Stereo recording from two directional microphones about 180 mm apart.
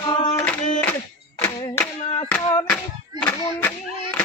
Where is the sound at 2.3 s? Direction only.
5° left (ahead or behind).